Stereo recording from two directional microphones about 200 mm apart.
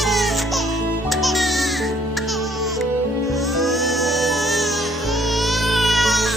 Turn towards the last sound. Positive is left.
turn(degrees=0)  # may be behind; listen again after turning